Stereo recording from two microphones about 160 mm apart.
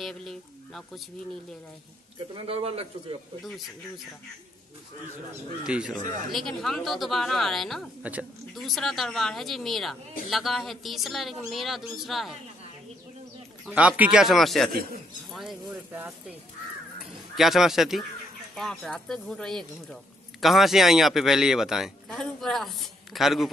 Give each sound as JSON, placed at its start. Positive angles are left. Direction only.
{"t": 0.0, "sound": "speech", "side_deg": 5}
{"t": 2.1, "sound": "a man's voice", "side_deg": -35}
{"t": 5.7, "sound": "speech", "side_deg": -5}
{"t": 8.0, "sound": "a woman's voice", "side_deg": -10}
{"t": 13.7, "sound": "speech", "side_deg": -10}
{"t": 17.4, "sound": "speech", "side_deg": 0}